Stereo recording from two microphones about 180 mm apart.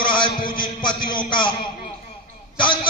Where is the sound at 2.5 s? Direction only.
25° left (ahead or behind).